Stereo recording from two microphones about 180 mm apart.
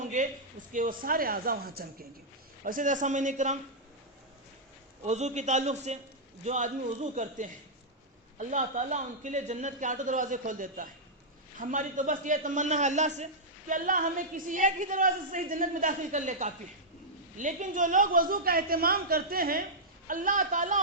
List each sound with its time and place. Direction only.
0.0 s a sound: 45° right (ahead or behind)
0.7 s a woman's voice: 50° right (ahead or behind)
5.0 s a man's voice: 40° right (ahead or behind)